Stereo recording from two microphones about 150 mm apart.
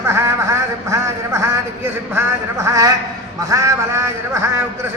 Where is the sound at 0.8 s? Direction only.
20° right (ahead or behind).